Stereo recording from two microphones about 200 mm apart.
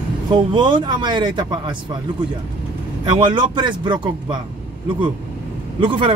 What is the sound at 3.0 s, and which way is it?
Speech, 25° right (ahead or behind).